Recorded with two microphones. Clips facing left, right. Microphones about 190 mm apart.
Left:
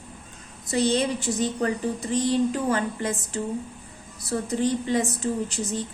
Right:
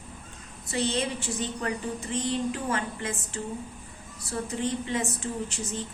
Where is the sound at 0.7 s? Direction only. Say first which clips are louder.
Left 6 dB; 40° left (ahead or behind).